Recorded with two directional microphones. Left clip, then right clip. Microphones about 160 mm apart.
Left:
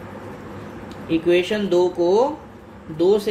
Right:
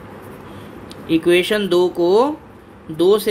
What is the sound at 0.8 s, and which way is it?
Speech, 45° right (ahead or behind).